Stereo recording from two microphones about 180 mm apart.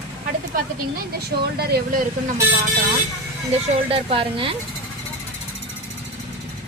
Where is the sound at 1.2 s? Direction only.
60° right (ahead or behind).